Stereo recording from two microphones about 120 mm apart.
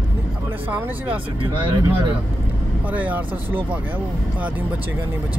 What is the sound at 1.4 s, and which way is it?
Speech, 45° right (ahead or behind).